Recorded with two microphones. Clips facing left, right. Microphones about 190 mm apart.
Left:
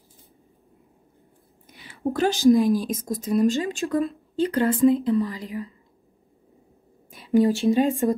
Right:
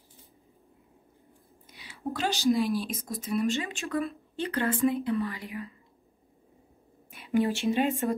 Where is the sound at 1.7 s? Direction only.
55° left (ahead or behind).